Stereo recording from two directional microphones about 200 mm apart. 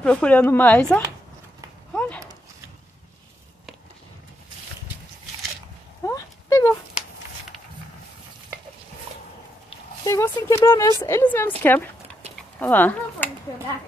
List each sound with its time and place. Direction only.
0.0 s speech: 5° left (ahead or behind)
2.0 s a sound: 5° left (ahead or behind)
6.0 s clip-clop: 15° left (ahead or behind)
10.0 s a woman's voice: 15° left (ahead or behind)